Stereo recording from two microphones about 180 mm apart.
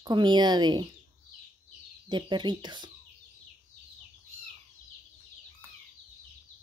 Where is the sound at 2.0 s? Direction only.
25° right (ahead or behind).